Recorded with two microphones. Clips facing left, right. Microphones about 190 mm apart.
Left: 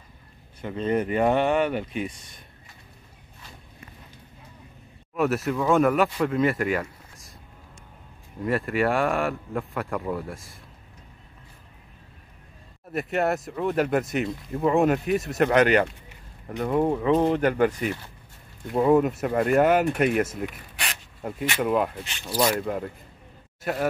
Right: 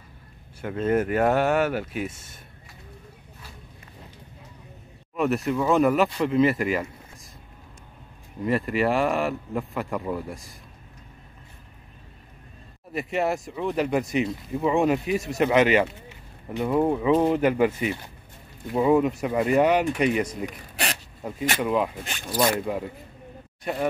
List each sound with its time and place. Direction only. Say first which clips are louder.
0.6 s speech: right 2 dB; 5° right (ahead or behind)
5.1 s speech: even; centre (ahead or behind)
8.5 s speech: right 1 dB; centre (ahead or behind)
12.9 s speech: left 1 dB; centre (ahead or behind)
20.4 s zipper: right 3 dB; 35° right (ahead or behind)
21.2 s speech: even; centre (ahead or behind)
22.0 s speech: right 1 dB; 50° right (ahead or behind)
23.6 s speech: even; centre (ahead or behind)